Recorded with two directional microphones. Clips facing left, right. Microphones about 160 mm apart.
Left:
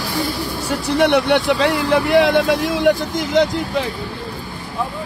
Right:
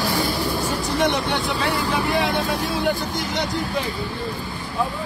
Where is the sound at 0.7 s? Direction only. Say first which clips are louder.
Left 9 dB; 70° left (ahead or behind); by 3.5 s 90° left.